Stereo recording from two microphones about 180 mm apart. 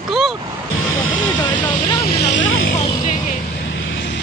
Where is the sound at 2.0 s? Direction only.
65° left (ahead or behind).